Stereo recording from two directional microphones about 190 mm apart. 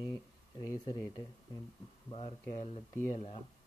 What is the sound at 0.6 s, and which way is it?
Speech, 15° left (ahead or behind).